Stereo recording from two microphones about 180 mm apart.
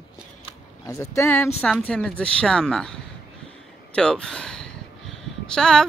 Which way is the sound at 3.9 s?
5° left (ahead or behind).